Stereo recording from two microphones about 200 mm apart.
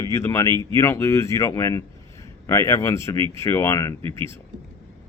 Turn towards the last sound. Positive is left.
turn(degrees=15)  # may be behind; listen again after turning